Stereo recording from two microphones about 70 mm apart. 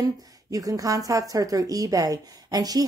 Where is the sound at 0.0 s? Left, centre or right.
Right.